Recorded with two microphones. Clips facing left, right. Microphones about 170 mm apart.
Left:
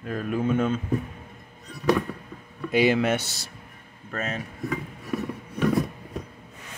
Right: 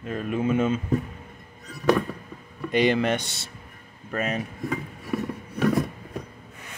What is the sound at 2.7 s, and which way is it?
Speech, 5° left (ahead or behind).